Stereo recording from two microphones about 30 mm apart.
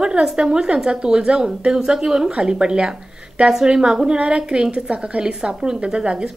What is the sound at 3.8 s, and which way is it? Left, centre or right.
A woman's voice, right.